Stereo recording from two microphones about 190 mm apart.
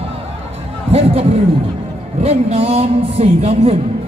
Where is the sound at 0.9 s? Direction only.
30° right (ahead or behind).